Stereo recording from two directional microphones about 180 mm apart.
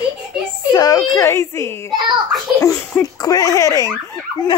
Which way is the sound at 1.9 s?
25° right (ahead or behind).